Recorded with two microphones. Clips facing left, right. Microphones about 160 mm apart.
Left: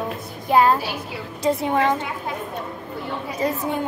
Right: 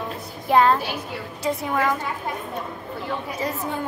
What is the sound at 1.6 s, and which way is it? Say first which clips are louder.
Speech: left 2 dB; 25° left (ahead or behind).